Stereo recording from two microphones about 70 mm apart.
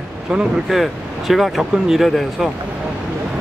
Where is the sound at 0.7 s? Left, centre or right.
Centre.